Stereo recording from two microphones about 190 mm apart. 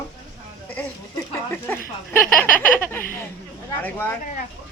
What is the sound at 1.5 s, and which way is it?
Speech, 10° left (ahead or behind).